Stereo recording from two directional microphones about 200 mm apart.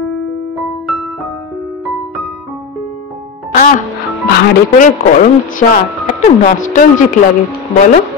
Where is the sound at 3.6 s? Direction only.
45° left (ahead or behind).